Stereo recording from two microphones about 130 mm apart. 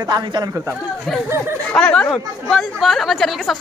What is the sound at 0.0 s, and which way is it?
Speech, 30° right (ahead or behind).